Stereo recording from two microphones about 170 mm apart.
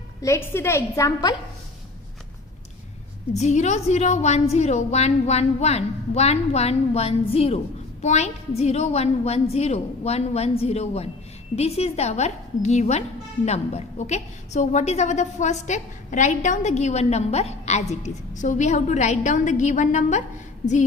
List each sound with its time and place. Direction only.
0.2 s a woman's voice: 15° left (ahead or behind)
3.3 s a woman's voice: 45° left (ahead or behind)